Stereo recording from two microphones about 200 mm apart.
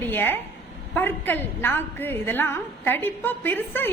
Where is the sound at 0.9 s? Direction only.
10° left (ahead or behind).